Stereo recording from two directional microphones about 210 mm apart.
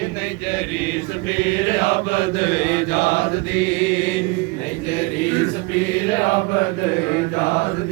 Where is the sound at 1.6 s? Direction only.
55° left (ahead or behind).